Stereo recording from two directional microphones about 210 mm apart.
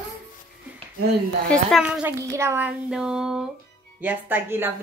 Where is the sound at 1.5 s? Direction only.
Centre (ahead or behind).